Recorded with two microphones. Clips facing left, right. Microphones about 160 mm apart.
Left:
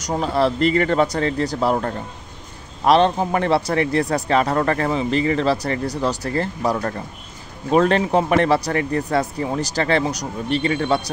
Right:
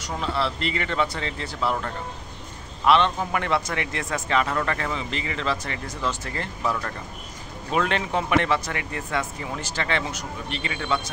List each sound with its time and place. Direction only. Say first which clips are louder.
0.0 s a man's voice: left 7 dB; 40° left (ahead or behind)